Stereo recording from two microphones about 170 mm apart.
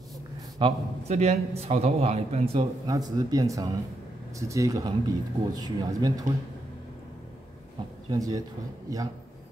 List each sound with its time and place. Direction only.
0.6 s a man's voice: 35° right (ahead or behind)
2.9 s speech: 20° right (ahead or behind)
8.1 s speech: 20° right (ahead or behind)